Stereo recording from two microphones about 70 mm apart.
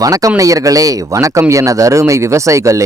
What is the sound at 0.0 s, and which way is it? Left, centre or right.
Speech, right.